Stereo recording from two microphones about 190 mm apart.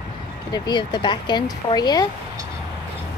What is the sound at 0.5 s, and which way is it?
Speech, 20° left (ahead or behind).